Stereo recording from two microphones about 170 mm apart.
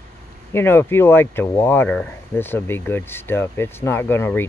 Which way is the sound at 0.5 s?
10° left (ahead or behind).